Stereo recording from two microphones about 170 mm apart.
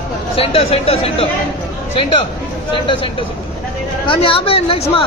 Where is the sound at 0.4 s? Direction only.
35° left (ahead or behind).